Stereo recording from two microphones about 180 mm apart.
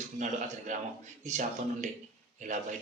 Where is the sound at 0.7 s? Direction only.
40° right (ahead or behind).